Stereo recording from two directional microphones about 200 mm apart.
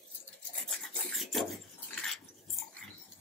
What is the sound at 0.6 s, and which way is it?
Rub, centre (ahead or behind).